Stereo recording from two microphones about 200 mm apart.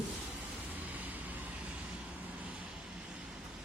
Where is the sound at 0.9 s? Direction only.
10° right (ahead or behind).